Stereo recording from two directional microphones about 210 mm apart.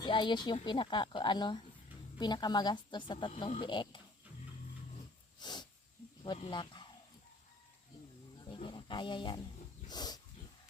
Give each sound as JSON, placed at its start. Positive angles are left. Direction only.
{"t": 0.0, "sound": "speech", "side_deg": 20}
{"t": 5.4, "sound": "sneeze", "side_deg": 20}
{"t": 6.2, "sound": "speech", "side_deg": 20}
{"t": 8.4, "sound": "a sound", "side_deg": 25}
{"t": 9.9, "sound": "dog", "side_deg": 20}